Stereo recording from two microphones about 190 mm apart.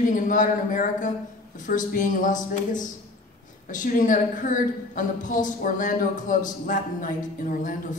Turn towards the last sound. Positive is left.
turn(degrees=45)  # may be behind; listen again after turning